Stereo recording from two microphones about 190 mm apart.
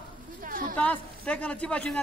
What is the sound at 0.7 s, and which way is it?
Speech, 5° left (ahead or behind).